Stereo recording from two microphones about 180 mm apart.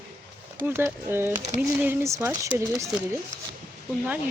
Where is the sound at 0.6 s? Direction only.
15° right (ahead or behind).